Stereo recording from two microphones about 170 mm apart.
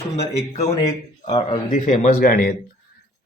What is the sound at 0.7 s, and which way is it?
Speech, 20° left (ahead or behind).